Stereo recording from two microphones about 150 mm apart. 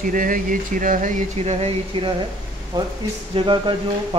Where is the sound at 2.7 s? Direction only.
25° right (ahead or behind).